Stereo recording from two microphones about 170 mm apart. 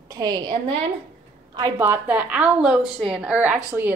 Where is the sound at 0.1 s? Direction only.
25° right (ahead or behind).